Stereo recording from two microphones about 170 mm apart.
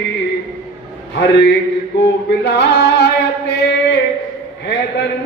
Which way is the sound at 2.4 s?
80° left.